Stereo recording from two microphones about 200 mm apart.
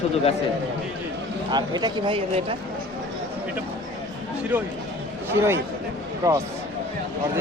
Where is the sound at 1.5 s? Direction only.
20° right (ahead or behind).